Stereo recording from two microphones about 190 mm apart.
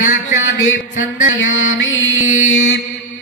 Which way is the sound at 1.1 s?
85° left.